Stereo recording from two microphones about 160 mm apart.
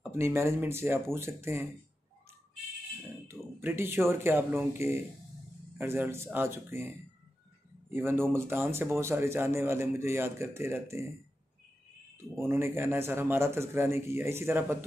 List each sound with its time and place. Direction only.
0.0 s speech: 15° right (ahead or behind)
3.3 s speech: 15° right (ahead or behind)
7.9 s speech: 15° right (ahead or behind)
12.2 s speech: 15° right (ahead or behind)